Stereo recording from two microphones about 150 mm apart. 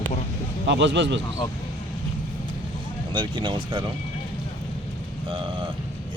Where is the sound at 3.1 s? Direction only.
35° right (ahead or behind).